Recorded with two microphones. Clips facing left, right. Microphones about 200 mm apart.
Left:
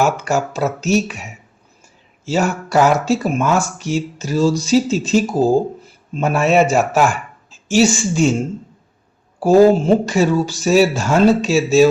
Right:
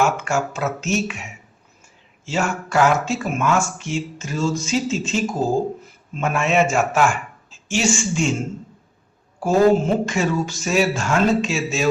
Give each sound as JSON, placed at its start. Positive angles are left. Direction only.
{"t": 0.0, "sound": "speech", "side_deg": 35}
{"t": 9.4, "sound": "speech", "side_deg": 35}